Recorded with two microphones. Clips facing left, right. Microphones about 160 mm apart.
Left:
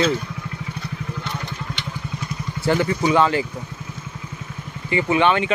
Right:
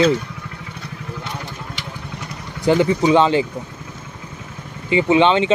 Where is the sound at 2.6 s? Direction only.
20° right (ahead or behind).